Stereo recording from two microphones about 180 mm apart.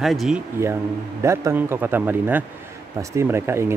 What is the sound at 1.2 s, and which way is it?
Speech, 15° right (ahead or behind).